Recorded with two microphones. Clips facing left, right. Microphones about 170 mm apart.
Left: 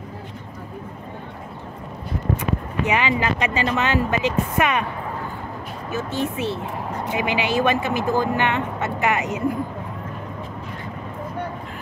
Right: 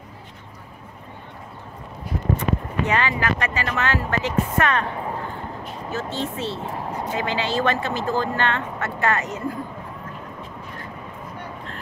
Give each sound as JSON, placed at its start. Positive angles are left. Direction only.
{"t": 2.9, "sound": "speech", "side_deg": 15}
{"t": 5.9, "sound": "speech", "side_deg": 15}